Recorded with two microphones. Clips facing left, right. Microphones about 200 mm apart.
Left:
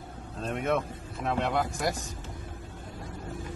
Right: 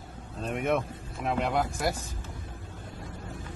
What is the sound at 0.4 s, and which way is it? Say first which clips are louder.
Speech: right 1 dB; 15° right (ahead or behind).